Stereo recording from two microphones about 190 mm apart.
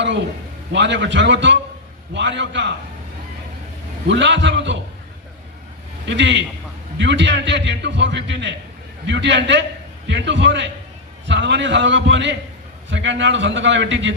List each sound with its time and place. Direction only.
0.7 s a man's voice: 70° right (ahead or behind)
4.1 s a man's voice: 70° right (ahead or behind)
6.1 s a man's voice: 70° right (ahead or behind)